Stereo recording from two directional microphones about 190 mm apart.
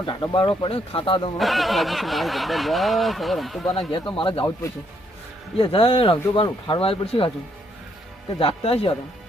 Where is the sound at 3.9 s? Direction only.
25° left (ahead or behind).